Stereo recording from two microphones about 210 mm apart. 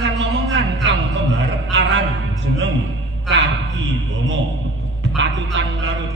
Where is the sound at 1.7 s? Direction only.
65° right (ahead or behind).